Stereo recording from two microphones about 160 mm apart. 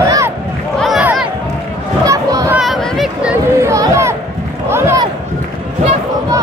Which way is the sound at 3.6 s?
15° right (ahead or behind).